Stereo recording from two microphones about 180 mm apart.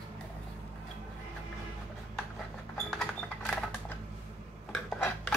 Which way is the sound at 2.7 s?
5° left (ahead or behind).